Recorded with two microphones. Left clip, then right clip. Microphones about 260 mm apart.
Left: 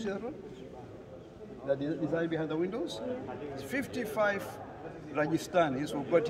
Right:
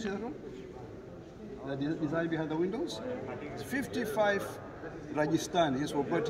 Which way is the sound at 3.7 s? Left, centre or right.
Centre.